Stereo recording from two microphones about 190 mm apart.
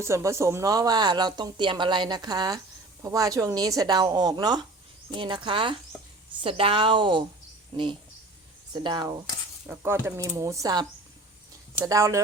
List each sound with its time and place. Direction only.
0.0 s speech: 15° right (ahead or behind)
8.7 s speech: 25° right (ahead or behind)
9.6 s speech: 10° right (ahead or behind)